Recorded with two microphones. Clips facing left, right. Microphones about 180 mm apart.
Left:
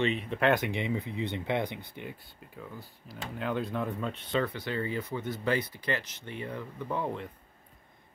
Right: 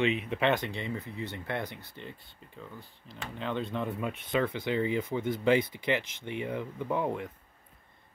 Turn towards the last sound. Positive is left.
turn(degrees=-15)  # may be behind; listen again after turning